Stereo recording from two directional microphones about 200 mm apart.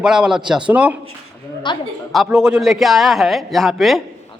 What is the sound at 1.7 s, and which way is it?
Speech, 25° left (ahead or behind).